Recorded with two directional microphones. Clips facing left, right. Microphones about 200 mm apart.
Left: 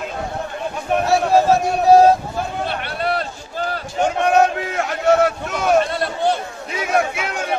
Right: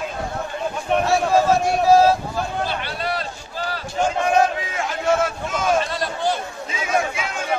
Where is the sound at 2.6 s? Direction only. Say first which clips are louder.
Left 3 dB; 60° left (ahead or behind).